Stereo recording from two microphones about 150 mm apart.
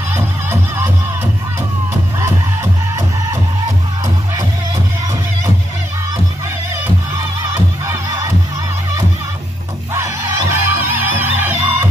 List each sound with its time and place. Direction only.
0.1 s music: 15° right (ahead or behind)
7.5 s music: 20° right (ahead or behind)
9.9 s music: 20° right (ahead or behind)